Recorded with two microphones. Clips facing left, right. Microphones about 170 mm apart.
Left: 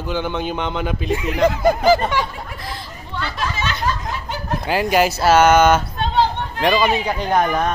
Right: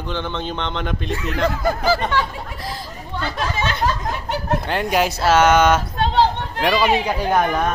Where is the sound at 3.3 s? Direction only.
55° right (ahead or behind).